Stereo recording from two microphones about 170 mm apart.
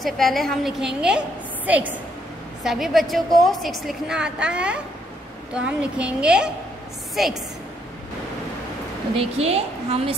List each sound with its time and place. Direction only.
0.0 s a woman's voice: centre (ahead or behind)
2.6 s a woman's voice: centre (ahead or behind)
9.1 s a woman's voice: 35° right (ahead or behind)